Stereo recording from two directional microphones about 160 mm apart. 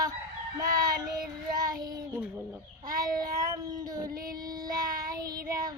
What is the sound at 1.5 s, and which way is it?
Child singing, 25° right (ahead or behind).